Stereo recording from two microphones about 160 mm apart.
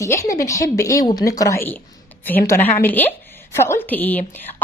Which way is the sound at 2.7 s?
10° left (ahead or behind).